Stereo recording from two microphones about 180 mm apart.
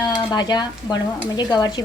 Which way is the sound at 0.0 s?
20° left (ahead or behind).